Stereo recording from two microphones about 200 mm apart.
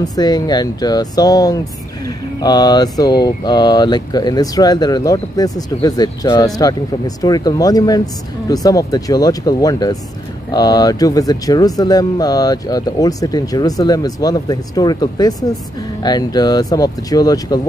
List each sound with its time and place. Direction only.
0.0 s speech: 20° left (ahead or behind)